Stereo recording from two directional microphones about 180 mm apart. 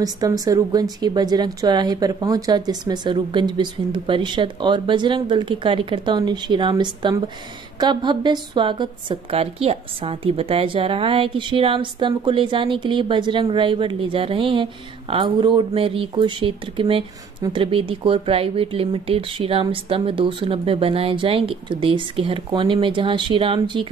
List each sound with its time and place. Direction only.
0.0 s a woman's voice: 20° right (ahead or behind)